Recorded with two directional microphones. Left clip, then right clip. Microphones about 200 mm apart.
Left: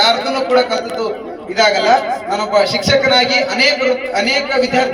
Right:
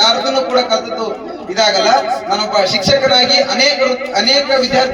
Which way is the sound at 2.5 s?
20° left (ahead or behind).